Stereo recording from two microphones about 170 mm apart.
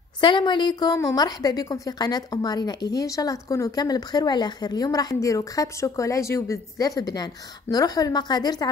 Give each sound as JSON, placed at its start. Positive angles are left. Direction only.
{"t": 0.2, "sound": "speech", "side_deg": 30}